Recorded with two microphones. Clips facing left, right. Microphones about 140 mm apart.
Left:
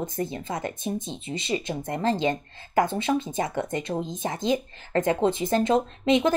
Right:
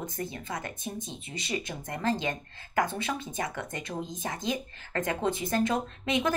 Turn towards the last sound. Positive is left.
turn(degrees=25)  # may be behind; listen again after turning